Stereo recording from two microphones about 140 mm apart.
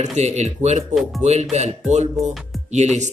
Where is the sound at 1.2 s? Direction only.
50° right (ahead or behind).